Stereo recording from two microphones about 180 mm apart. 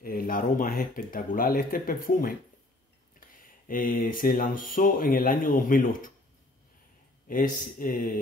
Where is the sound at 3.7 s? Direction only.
50° left (ahead or behind).